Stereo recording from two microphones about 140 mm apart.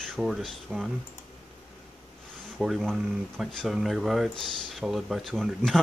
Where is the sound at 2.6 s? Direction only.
Centre (ahead or behind).